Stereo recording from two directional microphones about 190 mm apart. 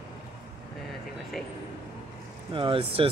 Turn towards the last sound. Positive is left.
turn(degrees=-30)  # may be behind; listen again after turning